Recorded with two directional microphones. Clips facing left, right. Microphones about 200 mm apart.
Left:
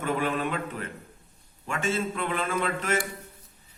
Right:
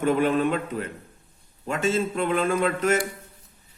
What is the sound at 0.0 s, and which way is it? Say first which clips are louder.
A man's voice: right 7 dB; 40° right (ahead or behind).